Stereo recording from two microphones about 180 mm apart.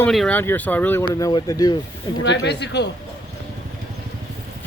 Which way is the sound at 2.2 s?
75° left (ahead or behind).